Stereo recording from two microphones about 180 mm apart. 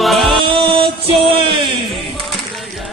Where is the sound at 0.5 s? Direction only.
30° right (ahead or behind).